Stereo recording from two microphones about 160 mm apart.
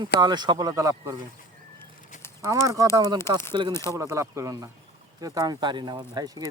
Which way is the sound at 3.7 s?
15° left (ahead or behind).